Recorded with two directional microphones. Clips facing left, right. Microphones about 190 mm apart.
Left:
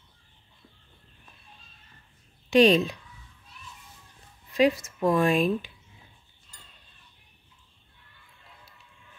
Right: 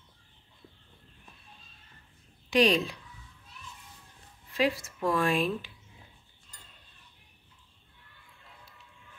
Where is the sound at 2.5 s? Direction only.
25° left (ahead or behind).